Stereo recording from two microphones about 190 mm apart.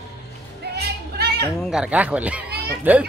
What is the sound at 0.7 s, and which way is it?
Music, 60° right (ahead or behind).